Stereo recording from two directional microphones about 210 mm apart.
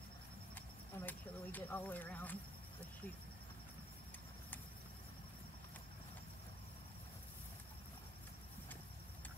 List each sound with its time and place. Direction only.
0.9 s speech: 10° left (ahead or behind)